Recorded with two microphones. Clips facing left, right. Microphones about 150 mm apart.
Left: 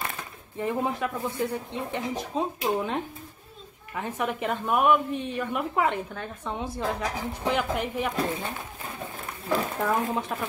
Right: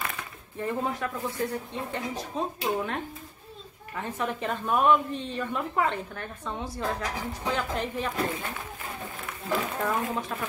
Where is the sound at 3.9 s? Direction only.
15° left (ahead or behind).